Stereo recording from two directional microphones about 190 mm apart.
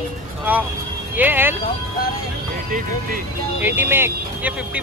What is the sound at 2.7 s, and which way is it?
Speech, 45° right (ahead or behind).